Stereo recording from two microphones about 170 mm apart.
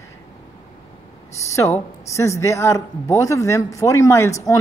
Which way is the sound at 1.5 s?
15° left (ahead or behind).